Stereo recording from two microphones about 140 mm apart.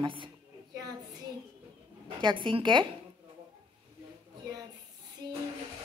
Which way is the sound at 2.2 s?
35° right (ahead or behind).